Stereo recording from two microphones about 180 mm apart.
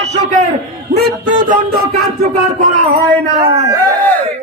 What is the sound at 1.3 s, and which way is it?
Music, 45° right (ahead or behind).